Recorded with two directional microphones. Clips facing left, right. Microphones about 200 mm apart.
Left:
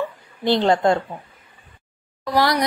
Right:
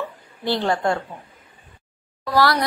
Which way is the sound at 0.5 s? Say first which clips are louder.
Left 4 dB; 20° left (ahead or behind).